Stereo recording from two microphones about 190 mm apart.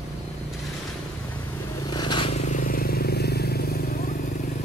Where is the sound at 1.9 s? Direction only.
25° left (ahead or behind); by 4.1 s 55° left (ahead or behind).